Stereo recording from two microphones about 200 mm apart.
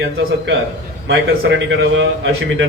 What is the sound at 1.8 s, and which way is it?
Speech, 65° right (ahead or behind).